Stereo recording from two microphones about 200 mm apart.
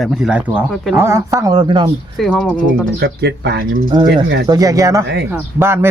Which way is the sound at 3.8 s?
25° right (ahead or behind).